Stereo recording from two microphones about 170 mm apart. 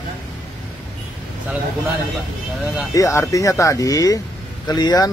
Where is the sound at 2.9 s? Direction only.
20° left (ahead or behind).